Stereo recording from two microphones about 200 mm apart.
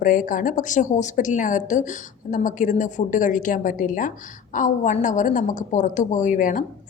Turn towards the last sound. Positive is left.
turn(degrees=40)  # may be behind; listen again after turning